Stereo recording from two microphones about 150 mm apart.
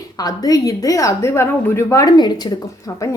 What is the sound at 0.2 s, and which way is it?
A woman's voice, 25° left (ahead or behind).